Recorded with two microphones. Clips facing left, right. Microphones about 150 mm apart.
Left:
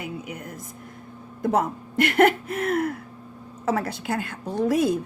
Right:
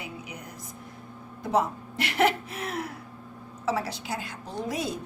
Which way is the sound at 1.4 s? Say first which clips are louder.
Left 3 dB; 50° left (ahead or behind).